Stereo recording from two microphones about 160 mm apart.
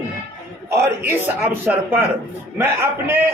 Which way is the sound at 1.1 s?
15° right (ahead or behind).